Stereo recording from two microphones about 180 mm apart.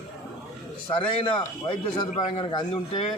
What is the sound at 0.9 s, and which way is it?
A man's voice, 30° left (ahead or behind).